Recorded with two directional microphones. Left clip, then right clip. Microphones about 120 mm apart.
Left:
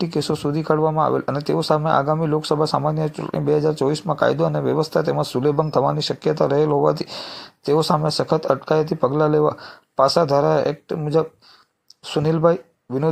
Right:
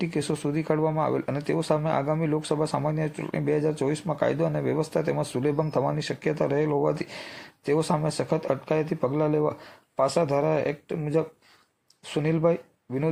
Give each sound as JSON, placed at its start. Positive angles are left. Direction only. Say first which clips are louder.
{"t": 0.0, "sound": "speech", "louder": "left 6 dB", "side_deg": 35}